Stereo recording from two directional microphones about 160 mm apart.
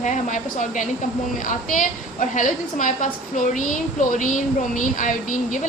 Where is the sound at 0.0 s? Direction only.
50° left (ahead or behind).